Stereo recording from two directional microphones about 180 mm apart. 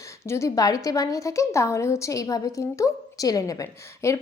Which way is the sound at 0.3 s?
15° left (ahead or behind).